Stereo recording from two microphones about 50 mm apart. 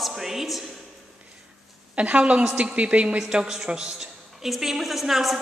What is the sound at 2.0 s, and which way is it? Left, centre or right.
A woman's voice, right.